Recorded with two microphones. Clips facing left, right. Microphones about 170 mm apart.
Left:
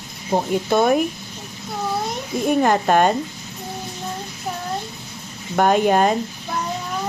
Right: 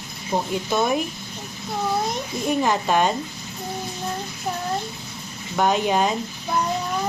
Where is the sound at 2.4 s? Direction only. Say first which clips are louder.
Left 4 dB; 55° left (ahead or behind).